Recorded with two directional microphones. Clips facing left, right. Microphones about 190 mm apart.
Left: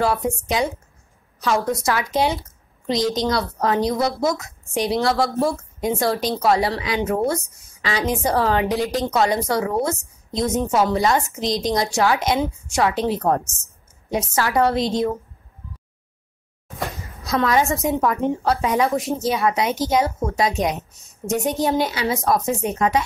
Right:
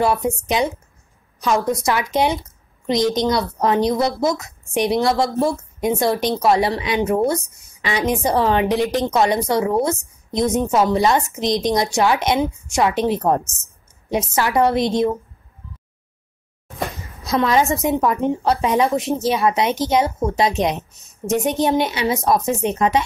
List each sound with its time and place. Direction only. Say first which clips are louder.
0.0 s a woman's voice: right 2 dB; 20° right (ahead or behind)
17.3 s a woman's voice: right 2 dB; 20° right (ahead or behind)